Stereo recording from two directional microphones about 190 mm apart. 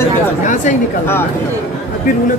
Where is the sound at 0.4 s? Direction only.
40° left (ahead or behind).